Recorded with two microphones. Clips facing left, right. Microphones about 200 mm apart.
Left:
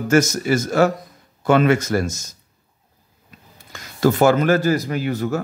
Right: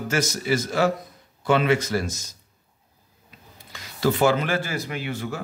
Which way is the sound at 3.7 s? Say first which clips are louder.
Left 5 dB; 45° left (ahead or behind).